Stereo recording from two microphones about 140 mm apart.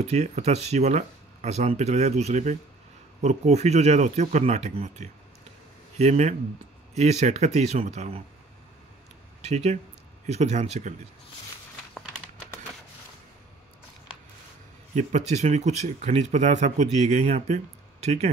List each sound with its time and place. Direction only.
0.0 s speech: 50° right (ahead or behind)
9.4 s speech: 55° right (ahead or behind)
15.0 s speech: 55° right (ahead or behind)